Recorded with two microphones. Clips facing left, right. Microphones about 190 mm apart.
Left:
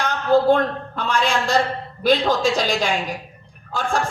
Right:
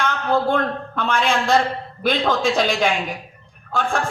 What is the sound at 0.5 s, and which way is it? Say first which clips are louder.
A man's voice: left 2 dB; 55° right (ahead or behind).